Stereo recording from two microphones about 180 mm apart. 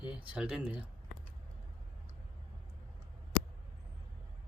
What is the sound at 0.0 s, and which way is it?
Speech, 5° right (ahead or behind).